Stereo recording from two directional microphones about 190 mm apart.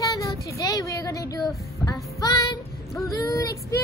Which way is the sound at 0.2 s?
15° left (ahead or behind).